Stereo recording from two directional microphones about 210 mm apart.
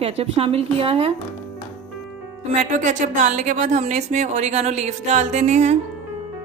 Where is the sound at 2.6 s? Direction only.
35° right (ahead or behind).